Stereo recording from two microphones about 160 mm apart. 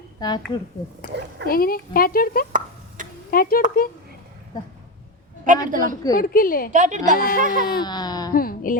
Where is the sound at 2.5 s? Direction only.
55° right (ahead or behind).